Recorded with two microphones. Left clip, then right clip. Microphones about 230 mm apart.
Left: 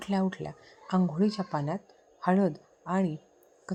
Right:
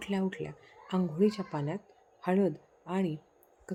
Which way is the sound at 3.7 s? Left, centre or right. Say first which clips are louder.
Left 3 dB; centre.